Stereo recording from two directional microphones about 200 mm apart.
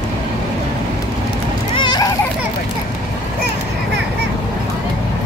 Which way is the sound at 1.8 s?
20° left (ahead or behind).